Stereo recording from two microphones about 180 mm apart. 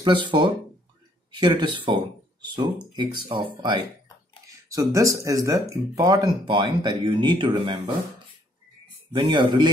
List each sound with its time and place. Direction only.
0.0 s speech: 25° right (ahead or behind)
4.5 s a sound: 20° right (ahead or behind)
4.9 s speech: 20° right (ahead or behind)
9.1 s speech: 25° right (ahead or behind)